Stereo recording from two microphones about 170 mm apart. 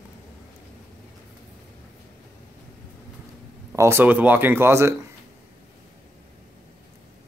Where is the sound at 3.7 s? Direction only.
15° right (ahead or behind).